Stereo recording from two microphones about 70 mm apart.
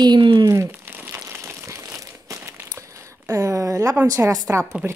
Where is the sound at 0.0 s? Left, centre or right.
Right.